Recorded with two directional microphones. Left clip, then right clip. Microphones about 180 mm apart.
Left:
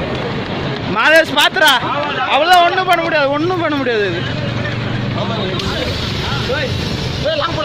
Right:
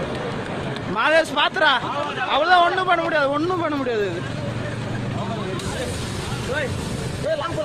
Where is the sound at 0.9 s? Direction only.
5° right (ahead or behind).